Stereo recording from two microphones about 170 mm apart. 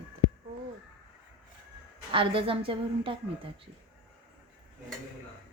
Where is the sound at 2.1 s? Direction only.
30° right (ahead or behind).